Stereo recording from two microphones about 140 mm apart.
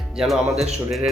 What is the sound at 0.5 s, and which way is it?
Speech, 50° right (ahead or behind).